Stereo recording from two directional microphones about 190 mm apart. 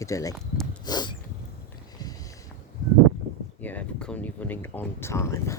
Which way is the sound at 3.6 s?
10° left (ahead or behind).